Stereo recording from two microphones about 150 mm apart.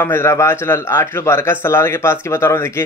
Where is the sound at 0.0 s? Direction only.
15° left (ahead or behind).